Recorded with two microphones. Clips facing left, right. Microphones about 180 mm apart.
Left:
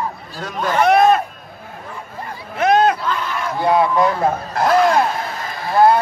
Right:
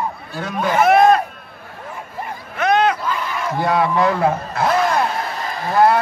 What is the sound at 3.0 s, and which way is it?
Crowd, 5° right (ahead or behind).